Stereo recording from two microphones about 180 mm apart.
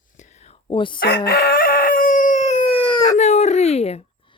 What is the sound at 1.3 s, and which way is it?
Chicken, 60° left (ahead or behind).